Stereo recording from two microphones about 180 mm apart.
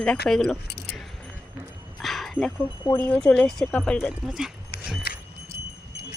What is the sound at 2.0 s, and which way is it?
Bow-wow, centre (ahead or behind).